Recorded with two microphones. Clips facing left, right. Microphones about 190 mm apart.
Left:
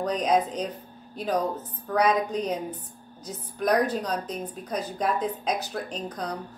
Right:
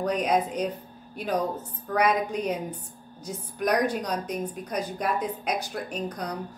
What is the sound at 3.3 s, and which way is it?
A woman's voice, 10° right (ahead or behind).